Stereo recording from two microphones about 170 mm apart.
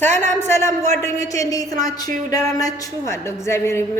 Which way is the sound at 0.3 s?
15° left (ahead or behind).